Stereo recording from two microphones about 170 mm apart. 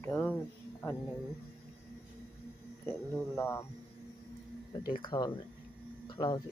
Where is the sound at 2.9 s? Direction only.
15° left (ahead or behind).